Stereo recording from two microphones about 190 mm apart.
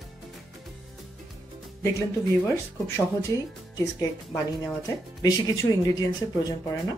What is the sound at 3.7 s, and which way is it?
Speech, 15° left (ahead or behind).